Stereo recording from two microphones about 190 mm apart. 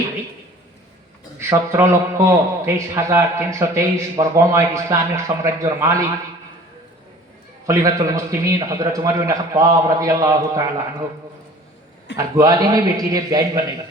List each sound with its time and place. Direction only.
1.4 s a man's voice: 15° right (ahead or behind)
7.7 s a man's voice: 15° right (ahead or behind)
12.1 s a man's voice: 20° right (ahead or behind)